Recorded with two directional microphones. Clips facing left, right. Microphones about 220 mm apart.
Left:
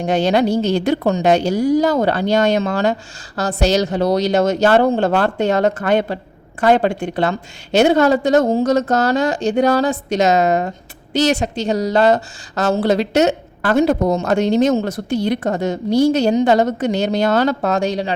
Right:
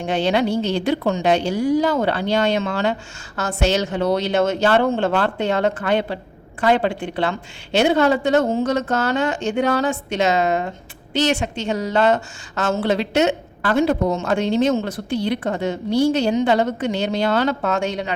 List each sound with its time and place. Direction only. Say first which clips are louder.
0.0 s a woman's voice: left 4 dB; 40° left (ahead or behind)